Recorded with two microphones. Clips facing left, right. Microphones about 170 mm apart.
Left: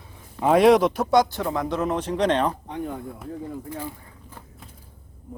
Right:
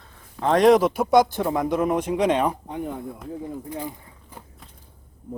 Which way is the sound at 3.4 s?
20° right (ahead or behind).